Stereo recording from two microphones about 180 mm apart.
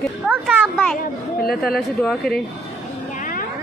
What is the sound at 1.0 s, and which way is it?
Speech, 55° left (ahead or behind).